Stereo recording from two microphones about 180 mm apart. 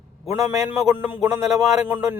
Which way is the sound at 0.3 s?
15° right (ahead or behind).